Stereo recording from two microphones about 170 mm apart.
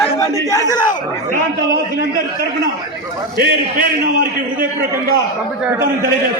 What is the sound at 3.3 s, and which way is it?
Speech, 65° right (ahead or behind).